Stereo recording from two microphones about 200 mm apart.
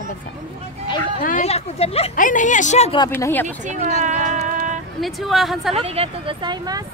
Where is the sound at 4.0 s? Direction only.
40° right (ahead or behind).